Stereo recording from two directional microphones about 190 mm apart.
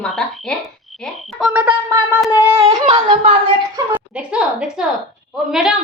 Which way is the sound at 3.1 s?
25° right (ahead or behind).